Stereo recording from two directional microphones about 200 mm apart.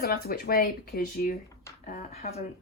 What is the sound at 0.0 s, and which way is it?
Speech, 50° left (ahead or behind).